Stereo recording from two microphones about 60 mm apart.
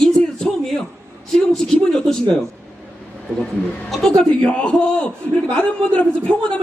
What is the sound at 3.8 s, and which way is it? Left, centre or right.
Speech, centre.